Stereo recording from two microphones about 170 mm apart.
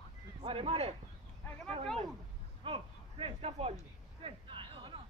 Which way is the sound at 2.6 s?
35° right (ahead or behind).